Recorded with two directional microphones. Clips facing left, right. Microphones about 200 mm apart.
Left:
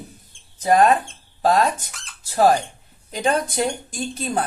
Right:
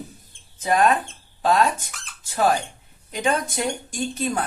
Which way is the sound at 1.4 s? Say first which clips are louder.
Left 1 dB; 40° left (ahead or behind).